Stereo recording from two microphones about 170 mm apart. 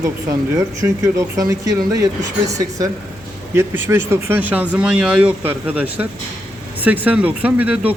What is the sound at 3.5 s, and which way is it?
Speech, 15° right (ahead or behind).